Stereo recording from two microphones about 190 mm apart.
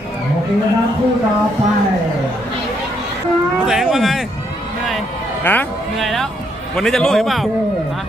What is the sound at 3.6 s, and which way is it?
Speech, 5° right (ahead or behind).